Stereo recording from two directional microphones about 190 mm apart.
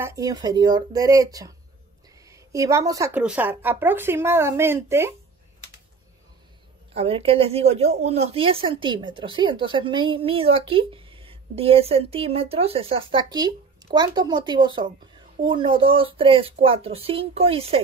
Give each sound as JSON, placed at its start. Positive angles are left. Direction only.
{"t": 0.0, "sound": "a woman's voice", "side_deg": -15}
{"t": 6.9, "sound": "speech", "side_deg": -30}